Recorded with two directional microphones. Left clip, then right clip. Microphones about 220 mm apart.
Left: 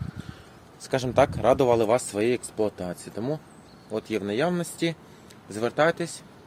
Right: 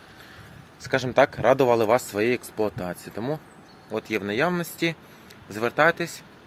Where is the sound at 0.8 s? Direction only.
5° left (ahead or behind).